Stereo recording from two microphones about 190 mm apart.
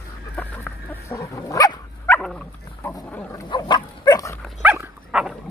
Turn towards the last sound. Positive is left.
turn(degrees=-5)  # may be behind; listen again after turning